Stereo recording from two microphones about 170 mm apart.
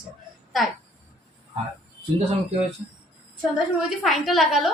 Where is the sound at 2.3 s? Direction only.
35° right (ahead or behind).